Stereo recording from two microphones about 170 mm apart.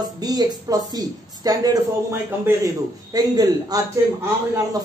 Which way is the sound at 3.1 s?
20° right (ahead or behind).